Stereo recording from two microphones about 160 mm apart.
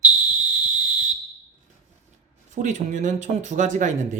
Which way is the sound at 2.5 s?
50° right (ahead or behind).